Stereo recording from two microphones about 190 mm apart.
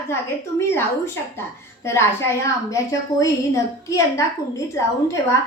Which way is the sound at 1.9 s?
15° left (ahead or behind).